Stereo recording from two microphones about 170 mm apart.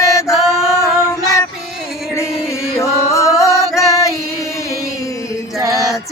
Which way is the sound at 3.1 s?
20° left (ahead or behind).